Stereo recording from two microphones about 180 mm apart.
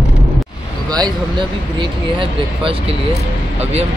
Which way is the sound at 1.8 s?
30° right (ahead or behind).